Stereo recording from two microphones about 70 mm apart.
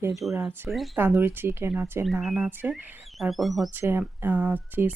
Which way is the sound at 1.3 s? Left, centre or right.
Right.